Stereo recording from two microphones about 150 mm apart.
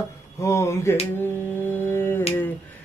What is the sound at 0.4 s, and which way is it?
Speech, 20° left (ahead or behind).